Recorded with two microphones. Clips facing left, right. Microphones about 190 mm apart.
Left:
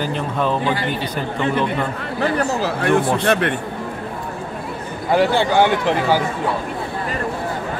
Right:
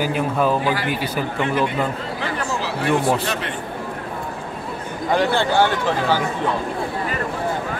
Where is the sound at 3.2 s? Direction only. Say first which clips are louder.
Left 8 dB; 60° left (ahead or behind).